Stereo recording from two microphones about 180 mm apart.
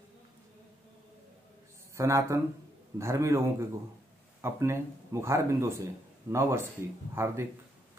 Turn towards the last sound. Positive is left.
turn(degrees=-15)  # may be behind; listen again after turning